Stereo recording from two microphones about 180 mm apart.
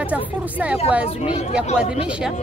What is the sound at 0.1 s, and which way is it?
Speech, 10° right (ahead or behind).